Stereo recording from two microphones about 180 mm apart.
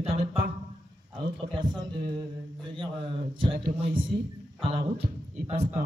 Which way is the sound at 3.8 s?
30° right (ahead or behind).